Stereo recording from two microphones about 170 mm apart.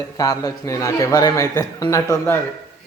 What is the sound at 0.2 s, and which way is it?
A man's voice, 20° left (ahead or behind).